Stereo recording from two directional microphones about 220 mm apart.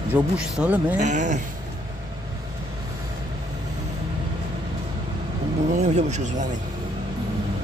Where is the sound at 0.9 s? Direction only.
35° right (ahead or behind).